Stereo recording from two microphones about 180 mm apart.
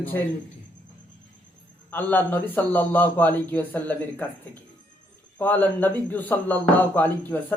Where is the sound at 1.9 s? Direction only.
10° left (ahead or behind).